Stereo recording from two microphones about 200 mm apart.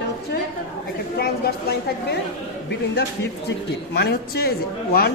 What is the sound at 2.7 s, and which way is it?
A man's voice, 55° left (ahead or behind).